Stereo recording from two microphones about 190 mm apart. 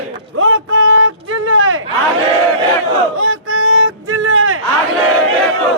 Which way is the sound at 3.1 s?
90° right.